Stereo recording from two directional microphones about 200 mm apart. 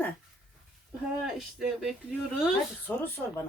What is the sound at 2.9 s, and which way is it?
Speech, 10° left (ahead or behind).